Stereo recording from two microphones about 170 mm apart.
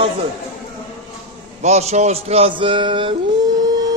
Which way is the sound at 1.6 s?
40° right (ahead or behind).